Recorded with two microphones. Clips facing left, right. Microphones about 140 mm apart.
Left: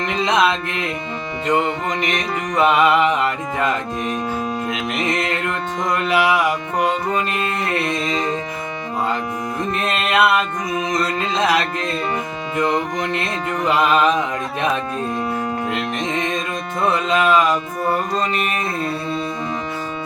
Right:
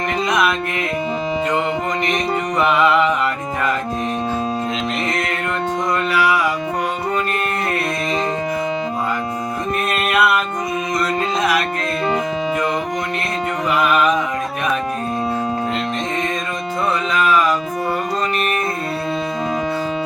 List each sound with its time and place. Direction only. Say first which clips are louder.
0.3 s music: left 2 dB; 20° left (ahead or behind)
2.6 s music: left 1 dB; 20° left (ahead or behind)
4.9 s music: left 1 dB; 20° left (ahead or behind)
9.9 s music: left 1 dB; 25° left (ahead or behind)
17.1 s music: left 1 dB; 20° left (ahead or behind)